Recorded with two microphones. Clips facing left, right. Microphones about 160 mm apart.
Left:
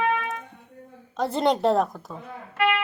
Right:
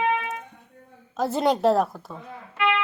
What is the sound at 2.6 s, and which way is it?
Guitar, 45° left (ahead or behind).